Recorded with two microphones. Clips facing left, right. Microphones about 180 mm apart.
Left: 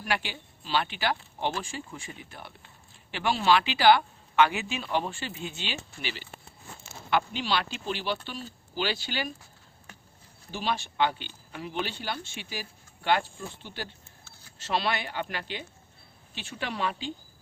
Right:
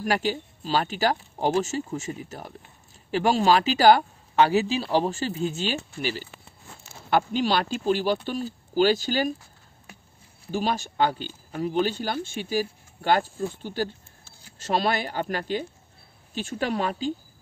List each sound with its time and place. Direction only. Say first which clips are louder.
0.0 s speech: right 7 dB; 40° right (ahead or behind)
10.5 s speech: right 5 dB; 45° right (ahead or behind)